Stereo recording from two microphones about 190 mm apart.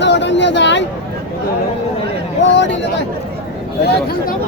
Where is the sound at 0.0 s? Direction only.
70° left (ahead or behind).